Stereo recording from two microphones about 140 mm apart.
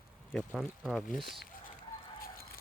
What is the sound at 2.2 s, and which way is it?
Chicken, 90° left.